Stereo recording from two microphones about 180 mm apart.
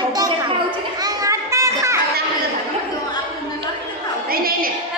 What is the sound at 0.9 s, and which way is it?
Children playing, 20° right (ahead or behind).